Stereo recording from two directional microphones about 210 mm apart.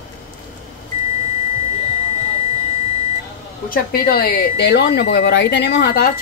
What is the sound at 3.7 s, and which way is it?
Speech, 45° left (ahead or behind).